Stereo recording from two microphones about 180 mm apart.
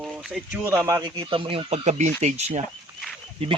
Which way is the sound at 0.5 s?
15° right (ahead or behind).